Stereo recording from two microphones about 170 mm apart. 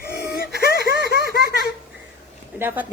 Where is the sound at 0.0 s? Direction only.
65° left (ahead or behind).